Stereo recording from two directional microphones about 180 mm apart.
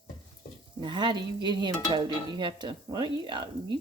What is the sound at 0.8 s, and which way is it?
Dishes, 25° right (ahead or behind).